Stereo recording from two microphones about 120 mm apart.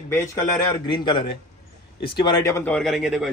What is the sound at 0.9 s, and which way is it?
Speech, 40° left (ahead or behind).